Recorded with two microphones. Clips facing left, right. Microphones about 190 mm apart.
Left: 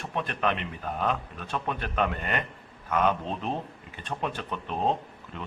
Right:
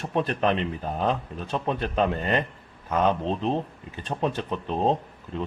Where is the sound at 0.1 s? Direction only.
35° right (ahead or behind).